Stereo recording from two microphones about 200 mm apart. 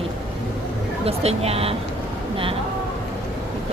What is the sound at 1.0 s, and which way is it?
Speech, 30° right (ahead or behind).